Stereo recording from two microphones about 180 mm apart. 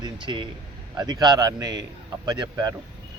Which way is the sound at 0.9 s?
20° right (ahead or behind).